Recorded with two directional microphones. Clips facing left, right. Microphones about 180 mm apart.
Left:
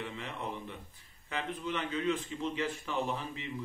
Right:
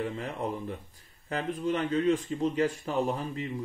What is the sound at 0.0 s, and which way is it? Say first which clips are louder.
Speech: right 7 dB; 45° right (ahead or behind).